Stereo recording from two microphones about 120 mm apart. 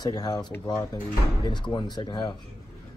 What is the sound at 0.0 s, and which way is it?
Speech, 35° left (ahead or behind).